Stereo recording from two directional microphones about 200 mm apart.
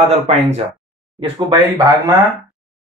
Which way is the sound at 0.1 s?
35° right (ahead or behind).